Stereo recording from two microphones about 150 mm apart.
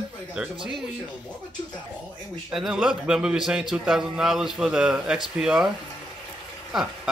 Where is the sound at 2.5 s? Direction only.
5° right (ahead or behind).